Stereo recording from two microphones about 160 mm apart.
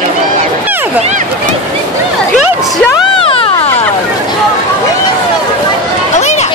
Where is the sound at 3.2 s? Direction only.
35° left (ahead or behind).